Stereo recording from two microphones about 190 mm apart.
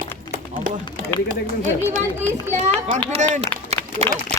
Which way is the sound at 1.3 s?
45° right (ahead or behind).